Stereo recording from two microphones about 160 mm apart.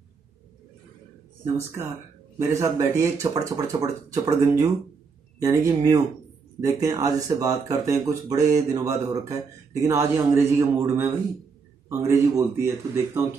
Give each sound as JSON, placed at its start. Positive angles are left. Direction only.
{"t": 2.3, "sound": "a man's voice", "side_deg": -20}